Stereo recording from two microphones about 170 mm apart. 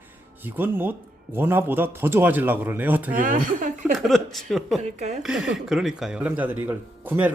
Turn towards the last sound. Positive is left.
turn(degrees=-10)  # may be behind; listen again after turning